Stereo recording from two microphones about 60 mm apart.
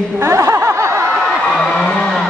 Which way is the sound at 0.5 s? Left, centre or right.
Right.